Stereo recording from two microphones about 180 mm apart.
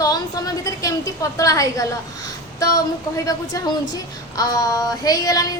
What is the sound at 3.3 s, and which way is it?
A woman's voice, 20° left (ahead or behind).